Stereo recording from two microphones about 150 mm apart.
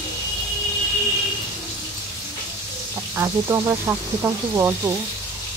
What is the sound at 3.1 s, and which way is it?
Speech, 15° right (ahead or behind).